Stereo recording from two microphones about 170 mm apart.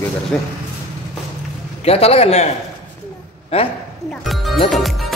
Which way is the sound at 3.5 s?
35° left (ahead or behind).